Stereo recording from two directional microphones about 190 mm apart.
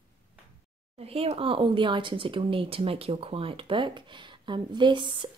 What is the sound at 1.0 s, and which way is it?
Speech, 30° right (ahead or behind).